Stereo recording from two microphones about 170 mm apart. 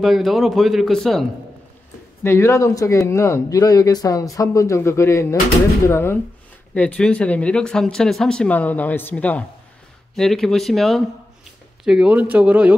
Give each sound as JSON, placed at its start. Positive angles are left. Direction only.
{"t": 0.0, "sound": "speech", "side_deg": 0}
{"t": 2.2, "sound": "speech", "side_deg": 15}